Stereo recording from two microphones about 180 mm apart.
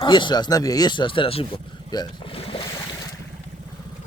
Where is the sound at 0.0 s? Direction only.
25° left (ahead or behind).